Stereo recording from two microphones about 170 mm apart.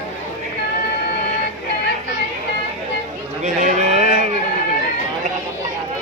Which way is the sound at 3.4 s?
45° right (ahead or behind).